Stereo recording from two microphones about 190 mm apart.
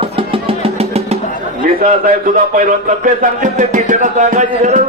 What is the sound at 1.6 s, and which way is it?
Speech, 45° right (ahead or behind).